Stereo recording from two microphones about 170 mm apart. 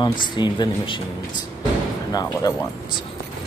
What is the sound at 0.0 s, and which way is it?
Speech, 25° left (ahead or behind).